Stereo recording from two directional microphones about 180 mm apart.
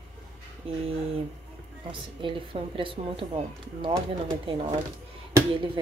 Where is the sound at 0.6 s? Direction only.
30° right (ahead or behind).